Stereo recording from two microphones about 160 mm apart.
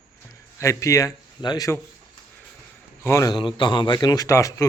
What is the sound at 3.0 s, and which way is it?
A man's voice, 20° left (ahead or behind).